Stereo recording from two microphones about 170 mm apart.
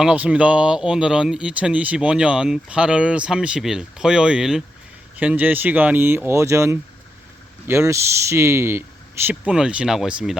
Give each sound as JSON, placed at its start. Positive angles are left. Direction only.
{"t": 0.0, "sound": "speech", "side_deg": -5}